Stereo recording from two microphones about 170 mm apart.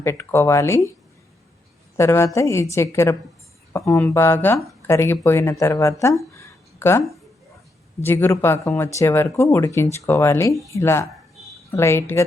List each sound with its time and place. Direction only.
0.0 s speech: 15° left (ahead or behind)
2.0 s speech: 15° left (ahead or behind)
6.3 s a sound: 15° left (ahead or behind)
8.0 s speech: 15° left (ahead or behind)